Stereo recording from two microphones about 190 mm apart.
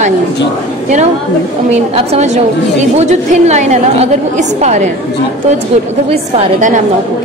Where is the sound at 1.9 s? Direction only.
35° right (ahead or behind).